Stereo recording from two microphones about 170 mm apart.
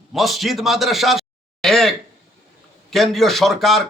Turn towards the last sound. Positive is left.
turn(degrees=0)  # may be behind; listen again after turning